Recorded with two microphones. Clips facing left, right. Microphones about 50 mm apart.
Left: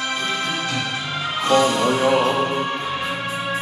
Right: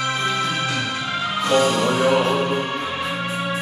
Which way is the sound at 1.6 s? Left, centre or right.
Centre.